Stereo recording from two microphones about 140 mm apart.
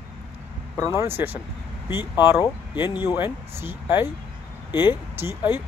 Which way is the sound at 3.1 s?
15° right (ahead or behind).